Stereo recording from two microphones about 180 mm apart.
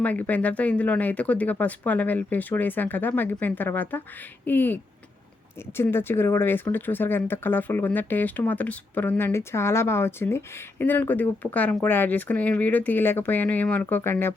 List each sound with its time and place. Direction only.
0.0 s speech: 10° left (ahead or behind)